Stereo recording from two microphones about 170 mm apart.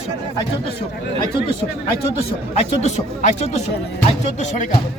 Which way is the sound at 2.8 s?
45° left (ahead or behind).